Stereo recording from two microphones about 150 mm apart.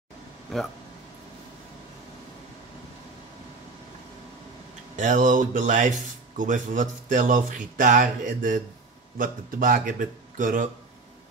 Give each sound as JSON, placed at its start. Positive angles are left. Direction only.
{"t": 4.9, "sound": "speech", "side_deg": -55}